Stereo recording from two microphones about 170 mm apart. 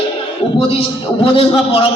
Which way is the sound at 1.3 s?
35° left (ahead or behind).